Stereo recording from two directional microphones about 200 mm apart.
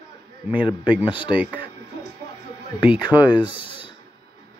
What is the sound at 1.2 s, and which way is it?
Speech, 5° right (ahead or behind).